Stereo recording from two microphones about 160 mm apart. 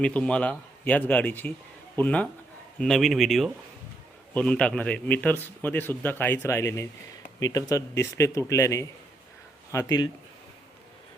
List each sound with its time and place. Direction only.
0.0 s a man's voice: 5° left (ahead or behind); by 10.1 s 25° left (ahead or behind)